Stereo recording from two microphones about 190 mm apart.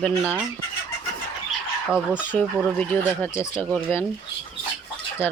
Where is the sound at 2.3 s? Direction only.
10° left (ahead or behind).